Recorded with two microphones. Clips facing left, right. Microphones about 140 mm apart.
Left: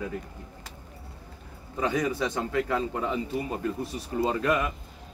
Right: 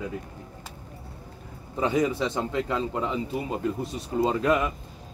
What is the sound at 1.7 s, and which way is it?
Speech, 25° right (ahead or behind).